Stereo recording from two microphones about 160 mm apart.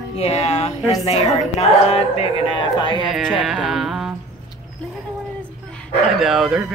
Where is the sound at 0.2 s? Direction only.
40° left (ahead or behind).